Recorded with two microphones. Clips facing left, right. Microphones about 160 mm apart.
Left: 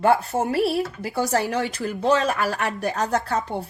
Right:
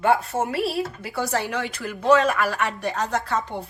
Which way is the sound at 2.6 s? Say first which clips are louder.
Left 1 dB; 40° left (ahead or behind).